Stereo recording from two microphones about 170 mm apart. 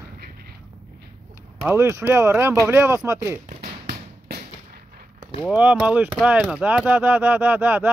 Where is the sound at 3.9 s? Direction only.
70° right (ahead or behind).